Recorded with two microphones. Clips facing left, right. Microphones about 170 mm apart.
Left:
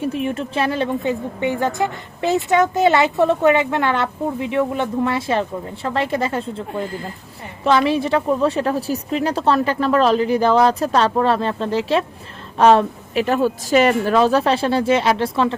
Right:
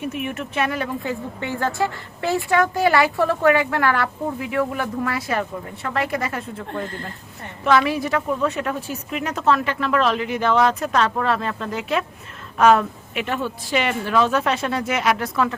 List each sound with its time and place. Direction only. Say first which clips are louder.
0.0 s a woman's voice: left 5 dB; 30° left (ahead or behind)
6.7 s speech: left 3 dB; 5° left (ahead or behind)
7.6 s a woman's voice: left 2 dB; 25° left (ahead or behind)